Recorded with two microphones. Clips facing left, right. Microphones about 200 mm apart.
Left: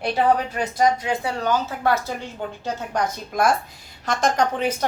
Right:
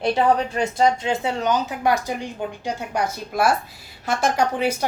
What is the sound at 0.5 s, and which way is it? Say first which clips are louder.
A woman's voice: right 1 dB; 25° right (ahead or behind).